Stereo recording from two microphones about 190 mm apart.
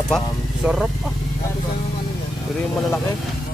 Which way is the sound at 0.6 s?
5° right (ahead or behind).